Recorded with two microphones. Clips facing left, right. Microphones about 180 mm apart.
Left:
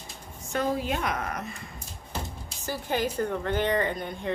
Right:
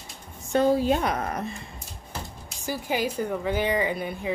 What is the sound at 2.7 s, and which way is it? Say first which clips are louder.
A woman's voice: right 1 dB; 10° right (ahead or behind).